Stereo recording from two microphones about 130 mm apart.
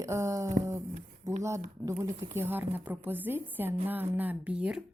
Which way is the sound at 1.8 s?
25° right (ahead or behind).